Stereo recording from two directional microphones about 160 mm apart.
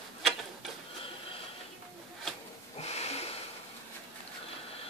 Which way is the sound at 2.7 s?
40° left (ahead or behind).